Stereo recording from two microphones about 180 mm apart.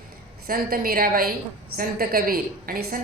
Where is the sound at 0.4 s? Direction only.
55° right (ahead or behind).